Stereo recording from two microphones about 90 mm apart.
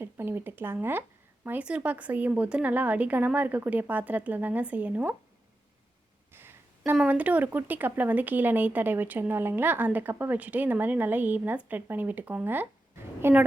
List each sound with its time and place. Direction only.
0.0 s speech: 25° right (ahead or behind)
1.5 s speech: 15° right (ahead or behind)
6.3 s a sound: 25° right (ahead or behind)
7.1 s speech: 15° right (ahead or behind)